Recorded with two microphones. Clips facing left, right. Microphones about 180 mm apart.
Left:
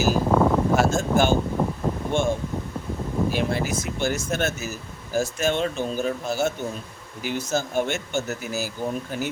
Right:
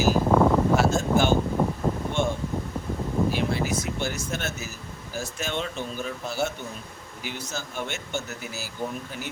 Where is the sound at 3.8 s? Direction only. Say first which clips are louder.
Left 4 dB; 50° left (ahead or behind).